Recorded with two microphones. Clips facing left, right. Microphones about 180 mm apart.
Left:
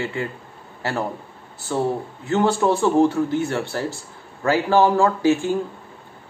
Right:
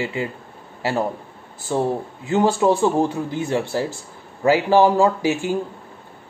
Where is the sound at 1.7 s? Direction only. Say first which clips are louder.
Right 1 dB; 15° right (ahead or behind).